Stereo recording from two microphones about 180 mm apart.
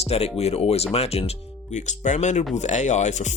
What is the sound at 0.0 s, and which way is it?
Speech, 35° left (ahead or behind).